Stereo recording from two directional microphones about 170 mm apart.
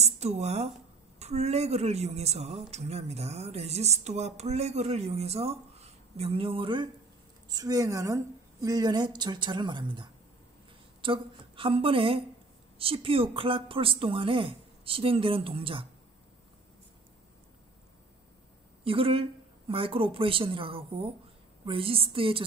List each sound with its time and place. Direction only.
0.0 s a woman's voice: 40° right (ahead or behind)
18.9 s speech: 35° right (ahead or behind)